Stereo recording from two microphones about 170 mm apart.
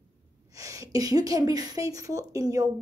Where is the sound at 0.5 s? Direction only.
20° right (ahead or behind).